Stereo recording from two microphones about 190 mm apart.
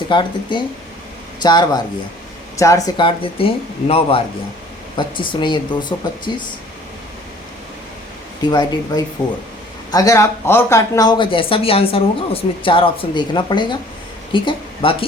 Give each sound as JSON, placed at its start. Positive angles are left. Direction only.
{"t": 0.1, "sound": "speech", "side_deg": 25}
{"t": 8.4, "sound": "speech", "side_deg": 20}